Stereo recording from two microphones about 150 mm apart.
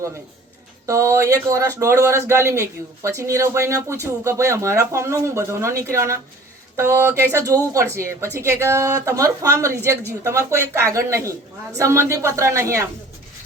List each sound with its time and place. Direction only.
0.9 s speech: 20° right (ahead or behind)